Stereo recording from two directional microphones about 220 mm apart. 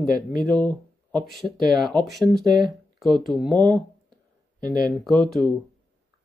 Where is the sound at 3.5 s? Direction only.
15° right (ahead or behind).